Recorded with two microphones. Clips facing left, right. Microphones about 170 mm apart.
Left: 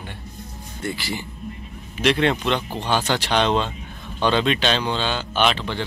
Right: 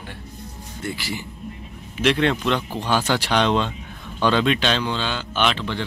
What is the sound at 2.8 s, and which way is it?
Speech, 5° right (ahead or behind).